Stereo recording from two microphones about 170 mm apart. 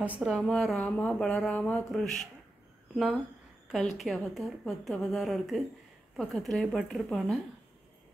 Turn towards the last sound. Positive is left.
turn(degrees=0)  # may be behind; listen again after turning